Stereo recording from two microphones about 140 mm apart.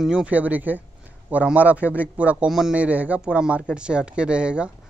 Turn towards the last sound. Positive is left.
turn(degrees=-5)  # may be behind; listen again after turning